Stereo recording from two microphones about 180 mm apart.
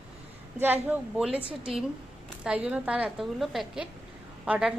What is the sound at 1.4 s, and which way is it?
Speech, 30° right (ahead or behind).